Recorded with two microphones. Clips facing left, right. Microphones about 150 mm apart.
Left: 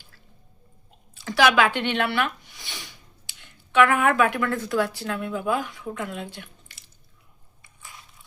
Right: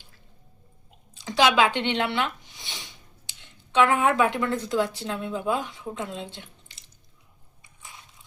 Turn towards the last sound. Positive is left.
turn(degrees=-20)  # may be behind; listen again after turning